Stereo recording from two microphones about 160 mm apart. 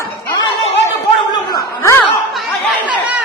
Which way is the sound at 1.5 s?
20° left (ahead or behind).